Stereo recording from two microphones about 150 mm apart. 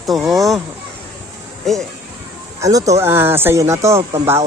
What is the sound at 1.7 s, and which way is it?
Speech, centre (ahead or behind).